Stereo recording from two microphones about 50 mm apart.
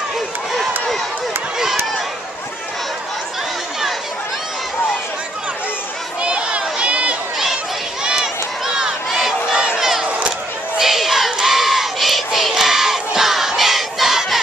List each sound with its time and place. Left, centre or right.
6.2 s crowd: right
8.0 s crowd: centre
10.0 s a sound: right
10.8 s crowd: centre